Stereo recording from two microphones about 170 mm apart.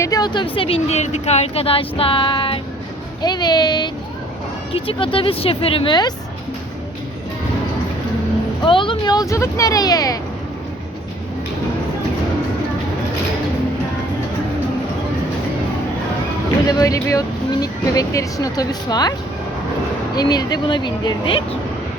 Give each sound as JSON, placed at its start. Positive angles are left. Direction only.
{"t": 0.0, "sound": "speech", "side_deg": 25}
{"t": 8.6, "sound": "speech", "side_deg": 30}
{"t": 16.6, "sound": "speech", "side_deg": 20}
{"t": 20.1, "sound": "speech", "side_deg": 25}